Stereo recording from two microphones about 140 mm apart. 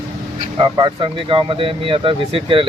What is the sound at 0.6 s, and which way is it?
Speech, 35° right (ahead or behind).